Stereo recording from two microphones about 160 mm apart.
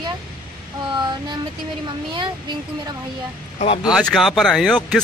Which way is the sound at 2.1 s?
30° right (ahead or behind).